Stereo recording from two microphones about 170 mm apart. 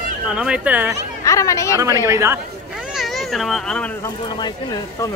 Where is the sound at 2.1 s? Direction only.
15° right (ahead or behind).